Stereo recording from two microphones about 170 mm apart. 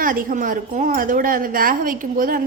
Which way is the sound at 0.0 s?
55° right (ahead or behind).